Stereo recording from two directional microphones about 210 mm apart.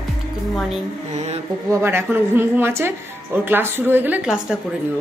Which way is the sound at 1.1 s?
30° right (ahead or behind).